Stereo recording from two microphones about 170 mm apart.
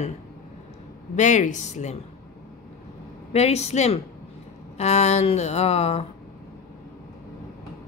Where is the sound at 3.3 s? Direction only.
40° left (ahead or behind).